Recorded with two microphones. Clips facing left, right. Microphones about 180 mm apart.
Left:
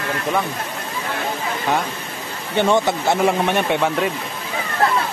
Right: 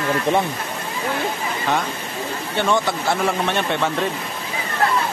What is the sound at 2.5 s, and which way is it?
Speech, 20° left (ahead or behind).